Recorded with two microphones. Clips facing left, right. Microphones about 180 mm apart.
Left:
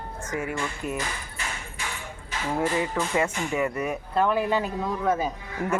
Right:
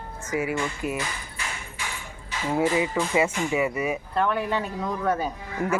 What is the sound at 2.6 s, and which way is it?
Speech, 10° right (ahead or behind).